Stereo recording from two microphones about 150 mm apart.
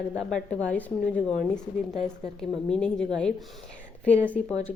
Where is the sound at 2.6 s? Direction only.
5° left (ahead or behind).